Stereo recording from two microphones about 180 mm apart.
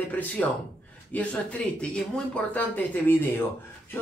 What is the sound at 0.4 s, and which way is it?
A man's voice, 5° left (ahead or behind).